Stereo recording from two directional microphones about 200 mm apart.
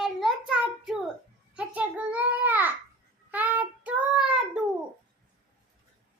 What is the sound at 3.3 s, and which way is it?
Child singing, 10° right (ahead or behind).